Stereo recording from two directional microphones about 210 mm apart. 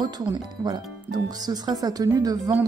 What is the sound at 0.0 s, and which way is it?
Speech, 20° right (ahead or behind).